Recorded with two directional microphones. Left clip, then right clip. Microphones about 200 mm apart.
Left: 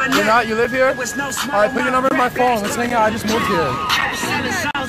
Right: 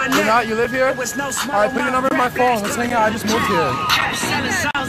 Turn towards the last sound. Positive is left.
turn(degrees=-25)  # may be behind; listen again after turning